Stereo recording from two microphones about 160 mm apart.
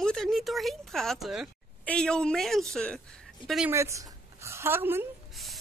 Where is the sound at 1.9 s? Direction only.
5° left (ahead or behind).